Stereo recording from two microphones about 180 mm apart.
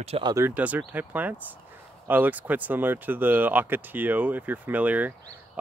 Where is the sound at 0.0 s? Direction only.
35° right (ahead or behind).